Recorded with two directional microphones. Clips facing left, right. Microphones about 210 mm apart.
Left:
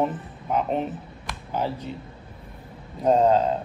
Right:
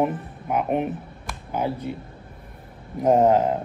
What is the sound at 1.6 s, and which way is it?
Speech, 55° right (ahead or behind).